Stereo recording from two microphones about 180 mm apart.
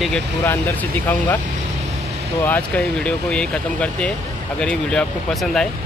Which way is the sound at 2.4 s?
10° left (ahead or behind).